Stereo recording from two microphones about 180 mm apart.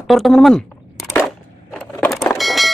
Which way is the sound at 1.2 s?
5° left (ahead or behind).